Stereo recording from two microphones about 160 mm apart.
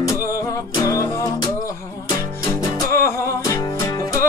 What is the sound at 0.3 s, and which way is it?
Music, 20° left (ahead or behind).